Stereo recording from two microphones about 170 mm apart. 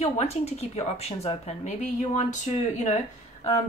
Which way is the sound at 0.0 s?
40° left (ahead or behind).